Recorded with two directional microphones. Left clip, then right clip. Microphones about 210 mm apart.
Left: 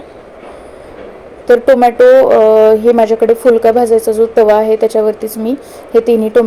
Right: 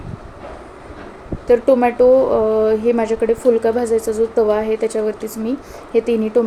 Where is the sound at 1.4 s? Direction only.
10° left (ahead or behind).